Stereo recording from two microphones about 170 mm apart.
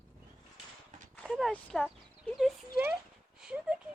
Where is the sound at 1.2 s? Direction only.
Centre (ahead or behind).